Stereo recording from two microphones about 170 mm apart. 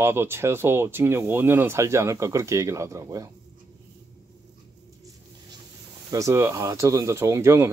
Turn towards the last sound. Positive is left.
turn(degrees=-15)  # may be behind; listen again after turning